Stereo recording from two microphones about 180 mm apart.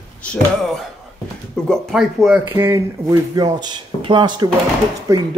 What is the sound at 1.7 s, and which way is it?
Speech, centre (ahead or behind).